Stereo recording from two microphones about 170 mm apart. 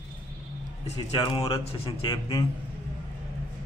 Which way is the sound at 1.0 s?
20° left (ahead or behind).